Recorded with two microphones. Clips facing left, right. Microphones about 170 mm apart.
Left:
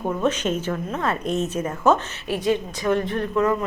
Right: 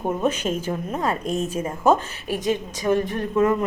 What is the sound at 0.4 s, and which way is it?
Speech, 35° right (ahead or behind).